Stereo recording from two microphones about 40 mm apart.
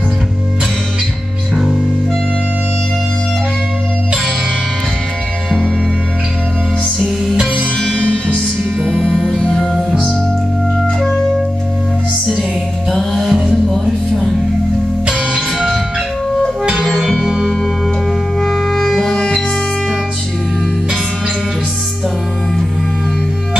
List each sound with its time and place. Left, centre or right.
9.7 s music: centre
13.1 s music: centre
15.0 s music: right
16.7 s music: centre
18.4 s music: centre